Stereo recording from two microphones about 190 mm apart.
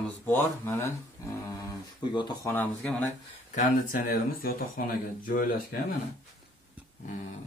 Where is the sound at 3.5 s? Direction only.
50° left (ahead or behind).